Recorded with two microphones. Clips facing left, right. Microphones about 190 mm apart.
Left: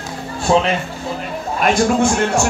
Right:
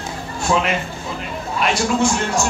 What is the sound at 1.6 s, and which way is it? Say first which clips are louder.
Speech: left 4 dB; 55° left (ahead or behind).